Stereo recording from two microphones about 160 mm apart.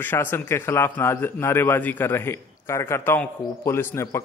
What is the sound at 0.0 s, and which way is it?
A man's voice, 15° left (ahead or behind).